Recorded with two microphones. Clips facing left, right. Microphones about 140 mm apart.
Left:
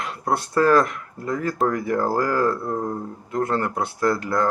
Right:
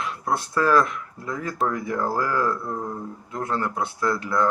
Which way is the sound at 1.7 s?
65° left (ahead or behind).